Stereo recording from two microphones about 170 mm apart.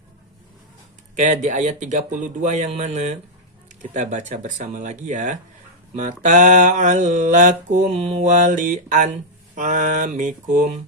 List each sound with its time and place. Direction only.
1.1 s mantra: 45° right (ahead or behind)